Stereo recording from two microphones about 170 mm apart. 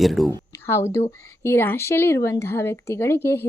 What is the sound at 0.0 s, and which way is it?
Speech, centre (ahead or behind).